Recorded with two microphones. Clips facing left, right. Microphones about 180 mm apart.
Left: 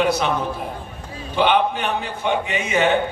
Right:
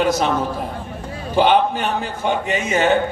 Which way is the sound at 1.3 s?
40° right (ahead or behind).